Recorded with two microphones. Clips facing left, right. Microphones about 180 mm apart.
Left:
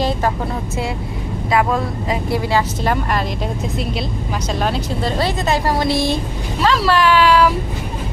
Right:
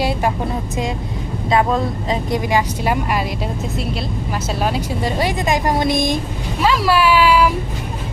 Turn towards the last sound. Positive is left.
turn(degrees=-10)  # may be behind; listen again after turning